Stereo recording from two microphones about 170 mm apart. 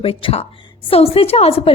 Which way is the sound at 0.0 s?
35° left (ahead or behind).